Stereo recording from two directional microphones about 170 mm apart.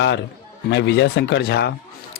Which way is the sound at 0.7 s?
90° left.